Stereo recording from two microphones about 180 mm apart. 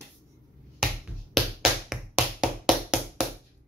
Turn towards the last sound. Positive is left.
turn(degrees=-5)  # may be behind; listen again after turning